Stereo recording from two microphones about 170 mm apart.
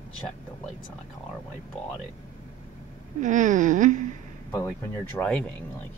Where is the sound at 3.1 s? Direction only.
45° right (ahead or behind).